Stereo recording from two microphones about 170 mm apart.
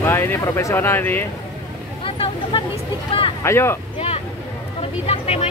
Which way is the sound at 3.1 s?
30° left (ahead or behind).